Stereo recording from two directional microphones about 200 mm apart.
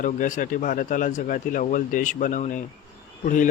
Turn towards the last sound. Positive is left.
turn(degrees=40)  # may be behind; listen again after turning